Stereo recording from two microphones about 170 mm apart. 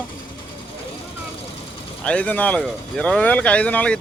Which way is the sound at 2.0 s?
10° left (ahead or behind).